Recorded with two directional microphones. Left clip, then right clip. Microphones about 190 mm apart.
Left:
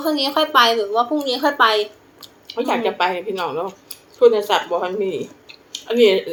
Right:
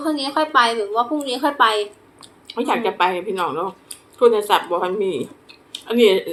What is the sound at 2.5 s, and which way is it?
A woman's voice, 20° right (ahead or behind).